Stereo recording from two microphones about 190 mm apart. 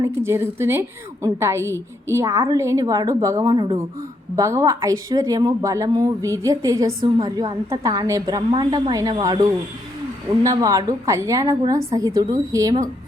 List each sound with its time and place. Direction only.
0.0 s a woman's voice: 15° right (ahead or behind)